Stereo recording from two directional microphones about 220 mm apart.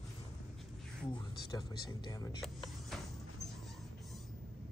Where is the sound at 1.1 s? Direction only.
20° left (ahead or behind).